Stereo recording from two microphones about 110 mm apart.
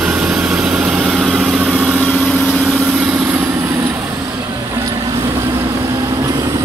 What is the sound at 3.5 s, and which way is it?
Vehicle, 25° right (ahead or behind).